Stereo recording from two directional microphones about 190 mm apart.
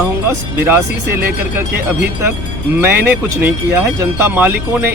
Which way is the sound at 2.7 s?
10° right (ahead or behind).